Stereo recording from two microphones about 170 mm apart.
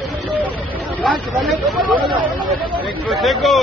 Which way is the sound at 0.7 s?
Centre (ahead or behind).